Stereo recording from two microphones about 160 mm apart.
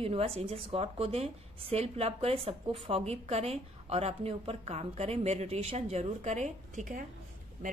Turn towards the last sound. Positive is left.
turn(degrees=-50)  # may be behind; listen again after turning